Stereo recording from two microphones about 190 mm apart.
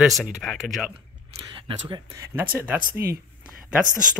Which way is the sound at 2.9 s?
55° right (ahead or behind).